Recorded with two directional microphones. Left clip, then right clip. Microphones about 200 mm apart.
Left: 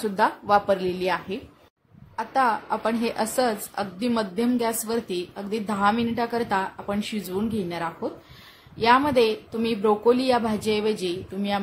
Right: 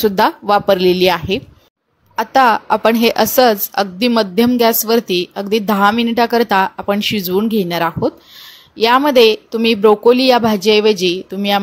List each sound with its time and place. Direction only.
0.0 s a woman's voice: 40° right (ahead or behind)